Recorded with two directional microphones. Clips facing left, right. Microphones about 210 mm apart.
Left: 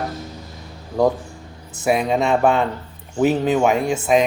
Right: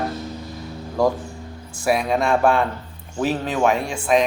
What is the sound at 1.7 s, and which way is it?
Speech, 20° left (ahead or behind).